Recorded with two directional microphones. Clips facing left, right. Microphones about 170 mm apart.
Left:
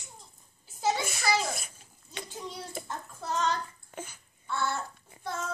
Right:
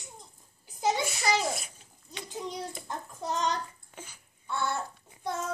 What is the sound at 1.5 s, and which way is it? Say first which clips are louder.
Babbling: right 2 dB; 50° left (ahead or behind).